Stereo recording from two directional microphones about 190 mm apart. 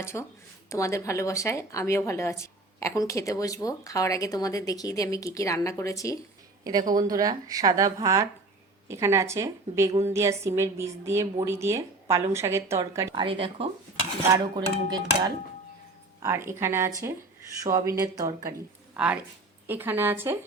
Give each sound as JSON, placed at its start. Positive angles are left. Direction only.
{"t": 0.0, "sound": "speech", "side_deg": 15}
{"t": 6.9, "sound": "a woman's voice", "side_deg": -20}
{"t": 18.9, "sound": "a woman's voice", "side_deg": -5}